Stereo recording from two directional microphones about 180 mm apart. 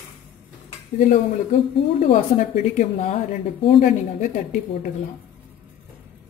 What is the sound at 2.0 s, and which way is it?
A woman's voice, 40° left (ahead or behind).